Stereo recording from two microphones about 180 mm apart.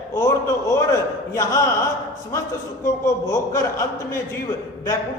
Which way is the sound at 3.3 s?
15° left (ahead or behind).